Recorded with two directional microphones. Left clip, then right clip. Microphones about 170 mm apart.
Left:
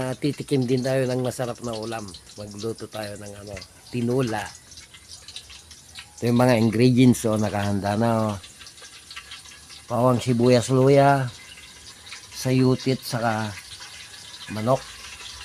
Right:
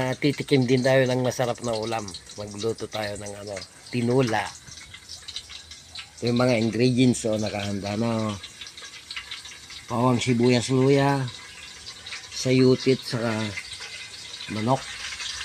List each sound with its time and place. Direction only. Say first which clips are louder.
0.0 s speech: right 2 dB; 5° left (ahead or behind)
6.2 s speech: left 3 dB; 45° left (ahead or behind)
7.8 s speech: left 7 dB; 30° left (ahead or behind)
9.9 s speech: left 2 dB; 20° left (ahead or behind)
12.4 s speech: right 2 dB; 40° left (ahead or behind)
13.1 s speech: left 3 dB; 20° left (ahead or behind)